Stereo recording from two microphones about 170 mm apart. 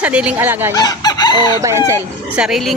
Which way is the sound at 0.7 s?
20° left (ahead or behind).